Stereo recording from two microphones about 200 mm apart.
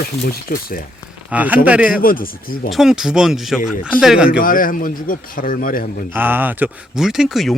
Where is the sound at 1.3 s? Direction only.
5° right (ahead or behind).